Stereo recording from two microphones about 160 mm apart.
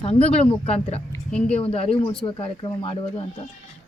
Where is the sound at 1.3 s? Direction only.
5° left (ahead or behind).